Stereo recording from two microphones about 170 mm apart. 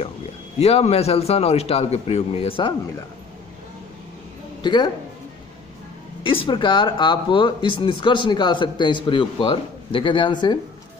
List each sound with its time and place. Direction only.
0.6 s a man's voice: 35° left (ahead or behind)
4.6 s speech: 25° left (ahead or behind)
6.4 s speech: 25° left (ahead or behind)